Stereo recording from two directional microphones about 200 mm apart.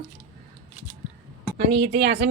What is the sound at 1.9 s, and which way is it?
Speech, 55° right (ahead or behind).